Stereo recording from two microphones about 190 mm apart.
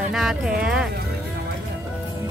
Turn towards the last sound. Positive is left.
turn(degrees=-5)  # may be behind; listen again after turning